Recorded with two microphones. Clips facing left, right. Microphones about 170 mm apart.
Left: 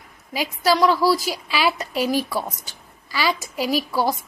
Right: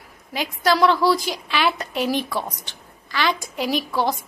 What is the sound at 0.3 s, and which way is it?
A woman's voice, 5° left (ahead or behind).